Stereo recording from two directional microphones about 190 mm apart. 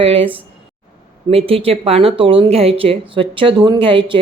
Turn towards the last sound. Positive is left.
turn(degrees=-25)  # may be behind; listen again after turning